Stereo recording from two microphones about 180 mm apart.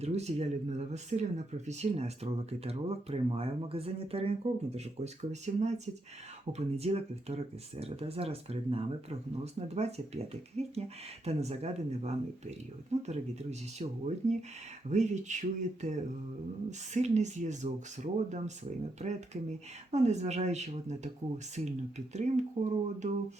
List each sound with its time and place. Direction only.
0.0 s speech: 35° right (ahead or behind)
11.3 s speech: 35° right (ahead or behind)